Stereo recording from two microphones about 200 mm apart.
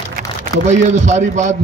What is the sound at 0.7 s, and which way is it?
Speech, 35° right (ahead or behind).